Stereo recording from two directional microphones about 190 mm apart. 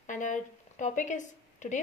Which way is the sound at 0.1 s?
40° left (ahead or behind).